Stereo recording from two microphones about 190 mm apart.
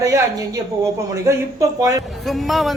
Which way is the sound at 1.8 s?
20° right (ahead or behind).